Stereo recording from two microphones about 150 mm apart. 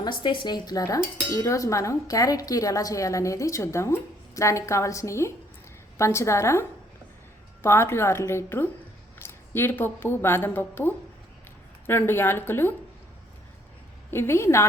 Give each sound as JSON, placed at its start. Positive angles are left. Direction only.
{"t": 0.0, "sound": "dishes", "side_deg": 30}
{"t": 7.6, "sound": "a woman's voice", "side_deg": 15}
{"t": 14.1, "sound": "a woman's voice", "side_deg": 15}